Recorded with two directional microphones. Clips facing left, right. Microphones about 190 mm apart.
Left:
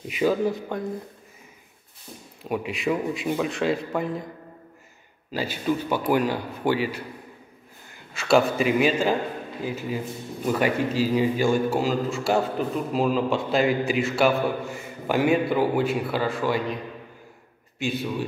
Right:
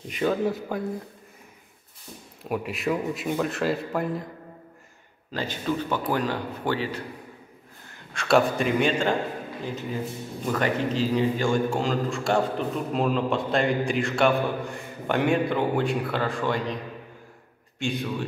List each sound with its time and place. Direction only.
0.1 s a man's voice: 5° left (ahead or behind)
2.4 s a man's voice: centre (ahead or behind)
5.3 s a man's voice: 10° left (ahead or behind)
8.1 s a man's voice: centre (ahead or behind)
17.7 s a man's voice: 5° left (ahead or behind)